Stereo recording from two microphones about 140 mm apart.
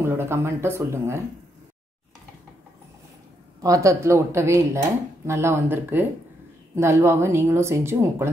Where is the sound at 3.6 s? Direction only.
25° right (ahead or behind).